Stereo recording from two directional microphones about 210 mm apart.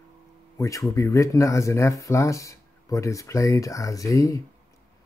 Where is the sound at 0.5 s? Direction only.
15° left (ahead or behind).